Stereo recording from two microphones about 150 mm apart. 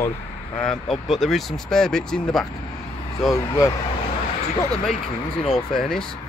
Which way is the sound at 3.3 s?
20° left (ahead or behind).